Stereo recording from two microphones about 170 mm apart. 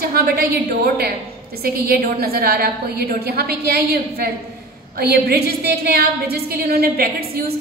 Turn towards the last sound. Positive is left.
turn(degrees=-65)  # may be behind; listen again after turning